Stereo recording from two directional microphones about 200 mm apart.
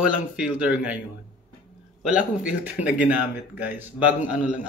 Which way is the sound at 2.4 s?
5° right (ahead or behind).